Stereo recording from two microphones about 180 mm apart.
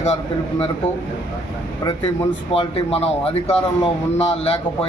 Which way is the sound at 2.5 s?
35° left (ahead or behind).